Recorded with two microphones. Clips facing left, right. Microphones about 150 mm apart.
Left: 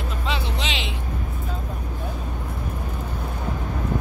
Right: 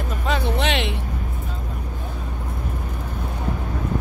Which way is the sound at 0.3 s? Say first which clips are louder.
Right 7 dB; 60° right (ahead or behind).